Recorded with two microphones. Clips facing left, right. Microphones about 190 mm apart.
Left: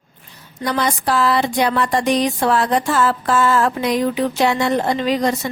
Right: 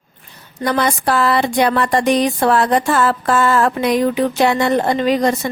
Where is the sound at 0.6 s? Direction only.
55° right (ahead or behind).